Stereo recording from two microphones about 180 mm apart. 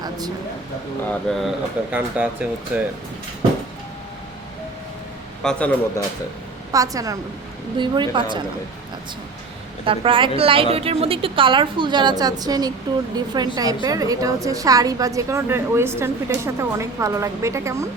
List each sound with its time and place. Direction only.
1.3 s a woman's voice: centre (ahead or behind)
5.4 s a man's voice: 5° left (ahead or behind)
6.7 s a woman's voice: 20° right (ahead or behind)
9.8 s a woman's voice: 30° right (ahead or behind)